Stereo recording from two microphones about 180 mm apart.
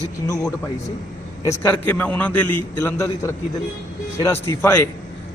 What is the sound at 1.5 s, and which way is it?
A man's voice, 10° left (ahead or behind).